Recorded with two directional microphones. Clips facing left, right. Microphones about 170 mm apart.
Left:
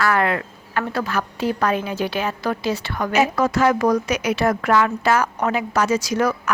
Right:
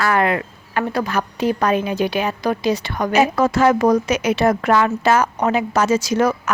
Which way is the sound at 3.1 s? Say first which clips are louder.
Right 2 dB; 30° right (ahead or behind).